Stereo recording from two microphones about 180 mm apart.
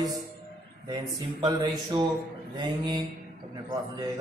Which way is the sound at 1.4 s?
25° right (ahead or behind).